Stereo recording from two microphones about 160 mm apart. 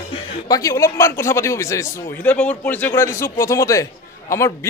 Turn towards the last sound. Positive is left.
turn(degrees=20)  # may be behind; listen again after turning